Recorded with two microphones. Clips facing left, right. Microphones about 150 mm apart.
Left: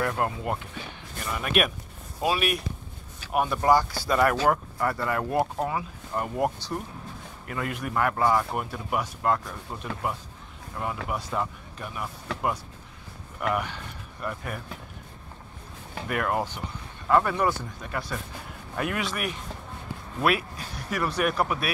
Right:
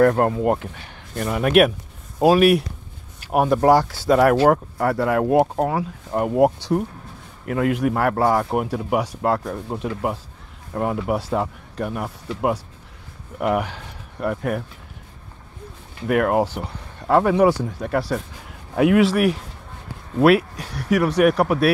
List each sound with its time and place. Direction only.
0.0 s speech: 45° right (ahead or behind)
1.1 s a man's voice: 65° right (ahead or behind)
2.1 s speech: 45° right (ahead or behind)
3.6 s speech: 80° right
5.3 s speech: 60° right (ahead or behind); by 6.8 s 85° right
7.4 s a man's voice: 70° right (ahead or behind)
11.1 s speech: 80° right
13.5 s speech: 85° right
14.2 s speech: 75° right (ahead or behind)
16.1 s speech: 70° right (ahead or behind); by 19.4 s 90° right
20.2 s speech: 80° right